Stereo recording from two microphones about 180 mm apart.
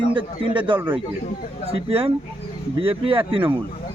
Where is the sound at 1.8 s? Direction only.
30° right (ahead or behind).